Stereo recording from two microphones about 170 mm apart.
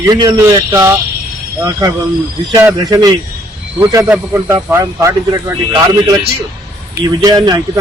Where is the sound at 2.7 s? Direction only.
20° right (ahead or behind).